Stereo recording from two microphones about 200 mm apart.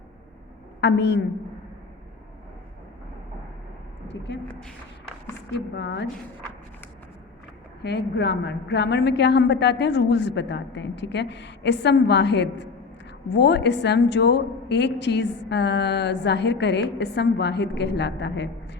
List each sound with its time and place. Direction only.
0.8 s a woman's voice: 60° left (ahead or behind)
4.1 s a woman's voice: 60° left (ahead or behind)
4.4 s a sound: 5° left (ahead or behind)
5.7 s a woman's voice: 60° left (ahead or behind)
7.8 s a woman's voice: 55° left (ahead or behind)